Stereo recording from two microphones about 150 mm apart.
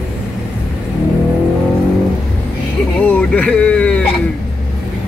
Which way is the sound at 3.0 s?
10° left (ahead or behind).